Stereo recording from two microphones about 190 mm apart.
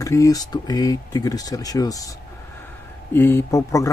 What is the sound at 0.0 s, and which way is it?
Speech, 15° left (ahead or behind).